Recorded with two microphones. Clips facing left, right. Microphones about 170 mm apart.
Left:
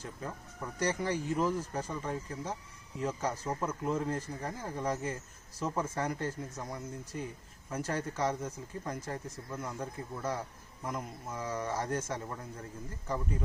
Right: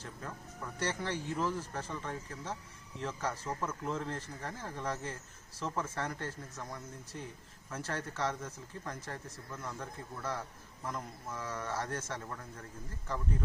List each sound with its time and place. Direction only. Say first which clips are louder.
0.0 s speech: left 3 dB; 15° left (ahead or behind)